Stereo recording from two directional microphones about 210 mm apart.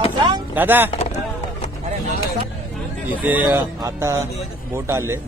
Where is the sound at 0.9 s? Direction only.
30° left (ahead or behind).